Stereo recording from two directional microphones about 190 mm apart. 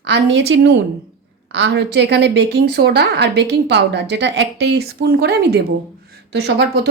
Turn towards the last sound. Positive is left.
turn(degrees=-60)  # may be behind; listen again after turning